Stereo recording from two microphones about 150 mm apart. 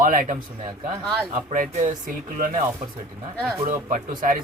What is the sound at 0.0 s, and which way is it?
Speech, 65° right (ahead or behind).